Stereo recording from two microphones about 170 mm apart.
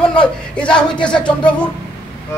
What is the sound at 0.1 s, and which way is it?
Speech, 5° left (ahead or behind).